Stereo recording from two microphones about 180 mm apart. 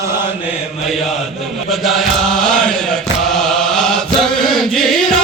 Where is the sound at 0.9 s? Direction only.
Centre (ahead or behind).